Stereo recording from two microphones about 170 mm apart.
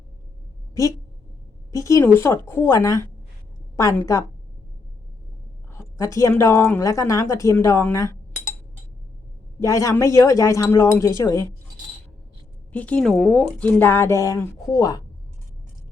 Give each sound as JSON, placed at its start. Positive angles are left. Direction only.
{"t": 0.7, "sound": "a woman's voice", "side_deg": 20}
{"t": 5.7, "sound": "speech", "side_deg": 15}
{"t": 9.6, "sound": "speech", "side_deg": 20}
{"t": 12.7, "sound": "speech", "side_deg": 10}